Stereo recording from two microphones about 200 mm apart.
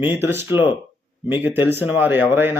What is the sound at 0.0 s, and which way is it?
Speech, 10° right (ahead or behind).